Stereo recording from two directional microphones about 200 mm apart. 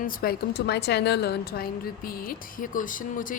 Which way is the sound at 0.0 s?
50° left (ahead or behind).